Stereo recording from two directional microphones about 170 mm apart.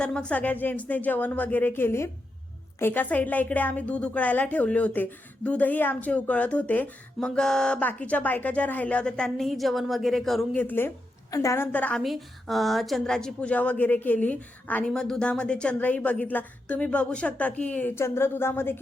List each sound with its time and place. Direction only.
0.0 s a woman's voice: 5° left (ahead or behind)